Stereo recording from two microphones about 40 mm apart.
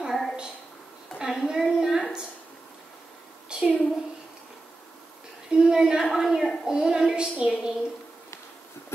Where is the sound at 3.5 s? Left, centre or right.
Right.